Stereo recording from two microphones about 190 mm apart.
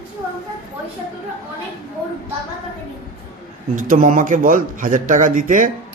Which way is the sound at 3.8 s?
45° right (ahead or behind).